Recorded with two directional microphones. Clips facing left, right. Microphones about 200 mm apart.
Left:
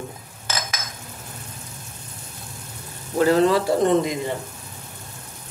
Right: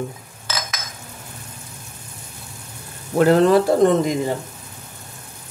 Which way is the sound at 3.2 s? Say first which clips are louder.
Right 3 dB; 55° right (ahead or behind).